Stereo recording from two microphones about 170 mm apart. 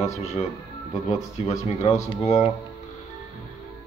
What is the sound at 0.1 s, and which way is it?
Speech, 40° left (ahead or behind).